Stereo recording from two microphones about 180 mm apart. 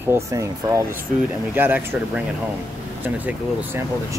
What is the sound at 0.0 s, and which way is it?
Speech, 15° right (ahead or behind).